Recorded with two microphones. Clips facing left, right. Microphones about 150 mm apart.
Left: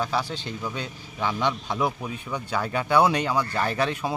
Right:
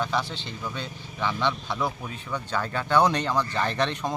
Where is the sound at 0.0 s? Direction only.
10° left (ahead or behind).